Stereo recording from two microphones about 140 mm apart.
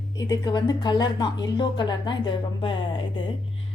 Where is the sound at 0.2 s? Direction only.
30° left (ahead or behind).